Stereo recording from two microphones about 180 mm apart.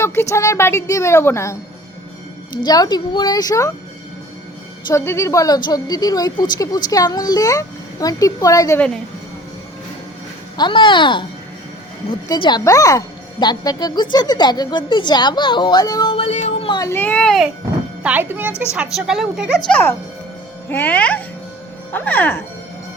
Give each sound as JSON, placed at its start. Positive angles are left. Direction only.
{"t": 0.0, "sound": "a woman's voice", "side_deg": 15}
{"t": 2.6, "sound": "a woman's voice", "side_deg": 20}
{"t": 4.9, "sound": "a woman's voice", "side_deg": 15}
{"t": 10.6, "sound": "a woman's voice", "side_deg": 25}
{"t": 12.3, "sound": "a woman's voice", "side_deg": 25}
{"t": 18.0, "sound": "a woman's voice", "side_deg": -10}
{"t": 19.6, "sound": "a woman's voice", "side_deg": 10}